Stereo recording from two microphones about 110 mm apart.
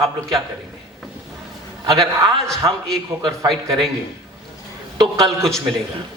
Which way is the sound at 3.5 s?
5° left (ahead or behind).